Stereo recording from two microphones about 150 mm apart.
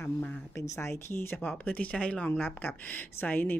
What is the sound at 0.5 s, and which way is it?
Speech, 20° left (ahead or behind).